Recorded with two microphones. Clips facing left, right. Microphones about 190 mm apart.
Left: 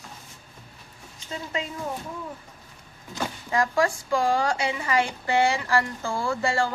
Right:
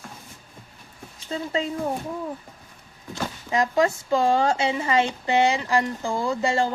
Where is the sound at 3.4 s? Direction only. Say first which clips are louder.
Right 2 dB; 20° right (ahead or behind).